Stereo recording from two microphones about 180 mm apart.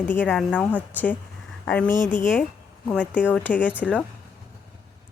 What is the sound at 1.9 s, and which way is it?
Speech, 45° left (ahead or behind).